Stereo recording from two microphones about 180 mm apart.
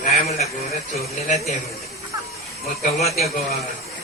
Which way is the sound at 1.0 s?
40° left (ahead or behind).